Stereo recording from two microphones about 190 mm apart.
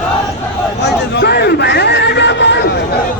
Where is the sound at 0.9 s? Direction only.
60° left (ahead or behind).